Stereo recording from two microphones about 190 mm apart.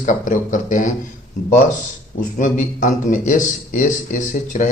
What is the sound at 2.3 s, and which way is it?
A man's voice, 40° left (ahead or behind).